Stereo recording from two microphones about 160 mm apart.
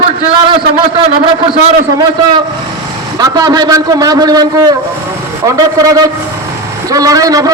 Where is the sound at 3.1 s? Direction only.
25° right (ahead or behind).